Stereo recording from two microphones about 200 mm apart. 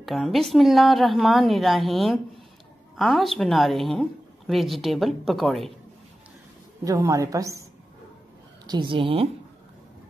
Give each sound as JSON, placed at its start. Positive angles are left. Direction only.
{"t": 0.0, "sound": "a woman's voice", "side_deg": 0}
{"t": 6.8, "sound": "a woman's voice", "side_deg": -15}
{"t": 8.6, "sound": "speech", "side_deg": -25}